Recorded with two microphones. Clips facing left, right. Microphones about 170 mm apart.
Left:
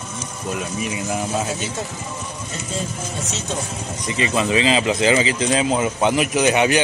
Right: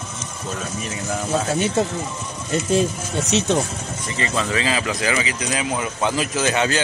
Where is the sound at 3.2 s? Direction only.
70° right (ahead or behind).